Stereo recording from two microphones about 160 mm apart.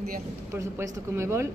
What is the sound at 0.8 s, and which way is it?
Speech, 15° right (ahead or behind).